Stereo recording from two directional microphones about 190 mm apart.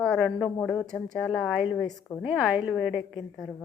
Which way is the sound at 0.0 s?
Centre (ahead or behind).